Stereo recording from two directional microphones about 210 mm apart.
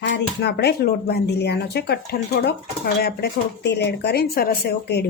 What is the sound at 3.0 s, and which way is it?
A woman's voice, 50° left (ahead or behind).